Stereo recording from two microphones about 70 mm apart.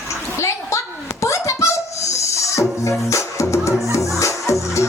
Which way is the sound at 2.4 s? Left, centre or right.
Left.